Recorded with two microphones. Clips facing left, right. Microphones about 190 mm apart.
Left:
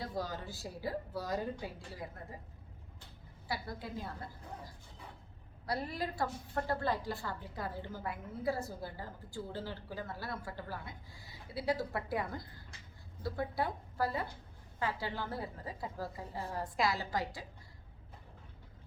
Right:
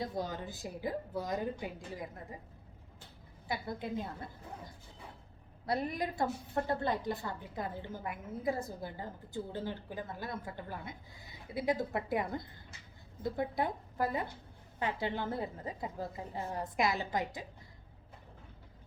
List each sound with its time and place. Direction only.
0.0 s a woman's voice: 20° right (ahead or behind)
3.5 s a woman's voice: 20° right (ahead or behind)
5.6 s a woman's voice: 20° right (ahead or behind)